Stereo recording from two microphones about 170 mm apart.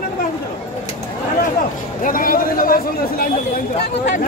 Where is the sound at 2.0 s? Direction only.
55° left (ahead or behind).